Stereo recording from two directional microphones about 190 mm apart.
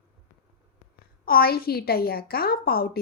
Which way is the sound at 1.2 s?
50° left (ahead or behind).